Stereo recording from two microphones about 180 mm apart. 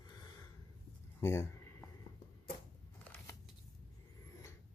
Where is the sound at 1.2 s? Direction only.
15° left (ahead or behind).